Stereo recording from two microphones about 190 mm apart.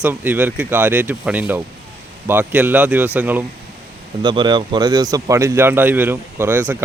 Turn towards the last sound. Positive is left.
turn(degrees=-10)  # may be behind; listen again after turning